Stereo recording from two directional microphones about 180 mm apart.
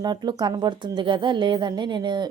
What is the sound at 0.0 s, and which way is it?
Speech, 25° right (ahead or behind).